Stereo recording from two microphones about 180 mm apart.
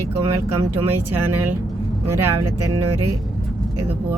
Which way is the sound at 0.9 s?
10° right (ahead or behind).